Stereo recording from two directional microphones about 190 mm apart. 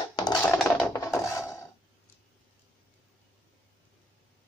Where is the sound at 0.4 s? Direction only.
5° left (ahead or behind).